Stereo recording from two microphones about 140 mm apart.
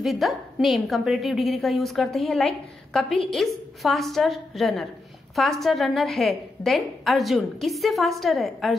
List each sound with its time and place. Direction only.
0.0 s a woman's voice: centre (ahead or behind)